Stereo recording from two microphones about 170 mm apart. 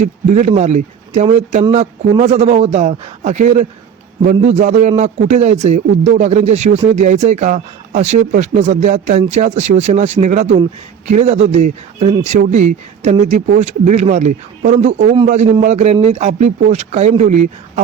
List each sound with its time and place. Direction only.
0.0 s a man's voice: 40° right (ahead or behind)